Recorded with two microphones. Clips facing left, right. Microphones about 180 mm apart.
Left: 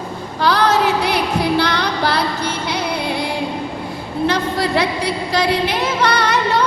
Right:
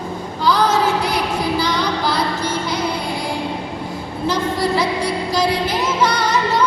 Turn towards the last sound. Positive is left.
turn(degrees=60)  # may be behind; listen again after turning